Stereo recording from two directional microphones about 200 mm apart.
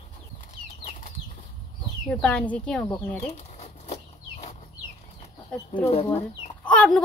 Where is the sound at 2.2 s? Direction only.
5° left (ahead or behind).